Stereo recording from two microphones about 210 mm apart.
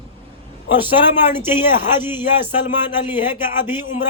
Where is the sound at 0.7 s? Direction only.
10° right (ahead or behind).